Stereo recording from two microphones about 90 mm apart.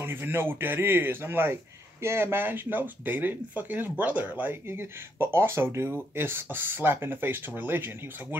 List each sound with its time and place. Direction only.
0.0 s speech: 25° right (ahead or behind)